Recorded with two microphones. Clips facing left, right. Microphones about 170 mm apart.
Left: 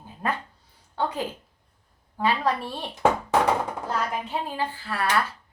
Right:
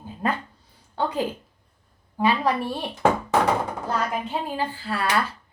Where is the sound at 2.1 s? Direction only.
15° right (ahead or behind).